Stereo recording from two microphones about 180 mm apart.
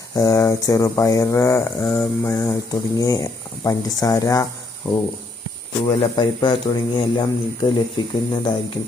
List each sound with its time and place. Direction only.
0.2 s mantra: 20° left (ahead or behind)
3.0 s speech: 20° left (ahead or behind)
4.9 s mantra: 10° left (ahead or behind)
5.8 s speech: 25° left (ahead or behind)